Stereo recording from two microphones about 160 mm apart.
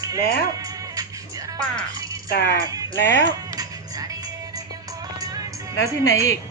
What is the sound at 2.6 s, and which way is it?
Speech, 20° right (ahead or behind).